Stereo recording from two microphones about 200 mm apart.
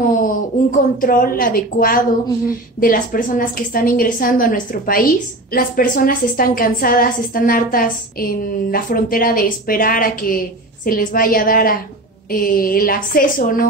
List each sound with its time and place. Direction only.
0.2 s a woman's voice: 45° left (ahead or behind)